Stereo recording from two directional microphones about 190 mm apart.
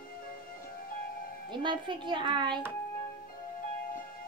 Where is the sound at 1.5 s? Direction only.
25° right (ahead or behind).